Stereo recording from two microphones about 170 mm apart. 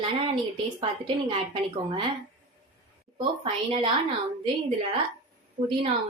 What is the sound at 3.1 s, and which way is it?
Speech, 35° right (ahead or behind).